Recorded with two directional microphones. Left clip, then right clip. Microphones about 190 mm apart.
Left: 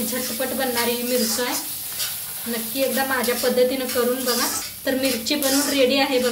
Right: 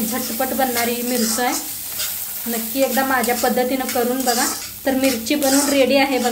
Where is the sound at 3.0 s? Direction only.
50° right (ahead or behind).